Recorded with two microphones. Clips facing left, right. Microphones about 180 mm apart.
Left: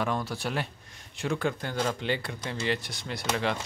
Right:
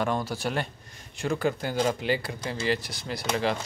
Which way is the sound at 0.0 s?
Centre (ahead or behind).